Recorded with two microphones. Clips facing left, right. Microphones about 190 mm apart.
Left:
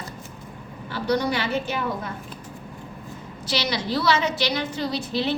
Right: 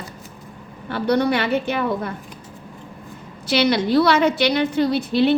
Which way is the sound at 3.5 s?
55° right (ahead or behind).